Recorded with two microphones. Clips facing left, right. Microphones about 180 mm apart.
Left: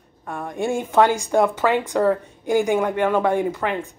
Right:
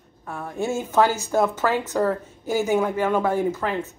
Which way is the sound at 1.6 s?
15° left (ahead or behind).